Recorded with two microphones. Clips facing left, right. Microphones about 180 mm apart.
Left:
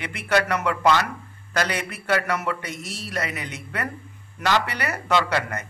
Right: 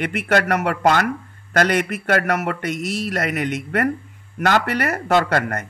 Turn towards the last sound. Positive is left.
turn(degrees=-50)  # may be behind; listen again after turning